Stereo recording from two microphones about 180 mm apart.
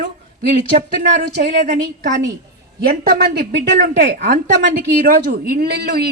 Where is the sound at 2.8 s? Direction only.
55° right (ahead or behind).